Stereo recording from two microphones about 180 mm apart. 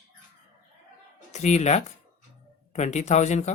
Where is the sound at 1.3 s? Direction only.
40° left (ahead or behind).